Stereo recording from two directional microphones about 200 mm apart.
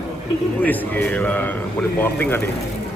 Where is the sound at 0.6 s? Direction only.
10° left (ahead or behind).